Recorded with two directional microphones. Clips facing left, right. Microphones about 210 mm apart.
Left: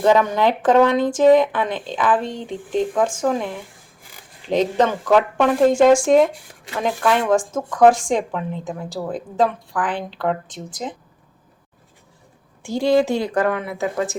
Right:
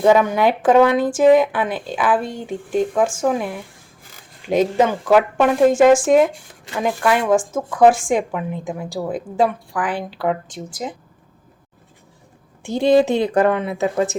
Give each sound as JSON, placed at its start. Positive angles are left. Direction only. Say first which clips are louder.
{"t": 0.0, "sound": "speech", "louder": "right 2 dB", "side_deg": -10}
{"t": 12.6, "sound": "speech", "louder": "right 3 dB", "side_deg": -20}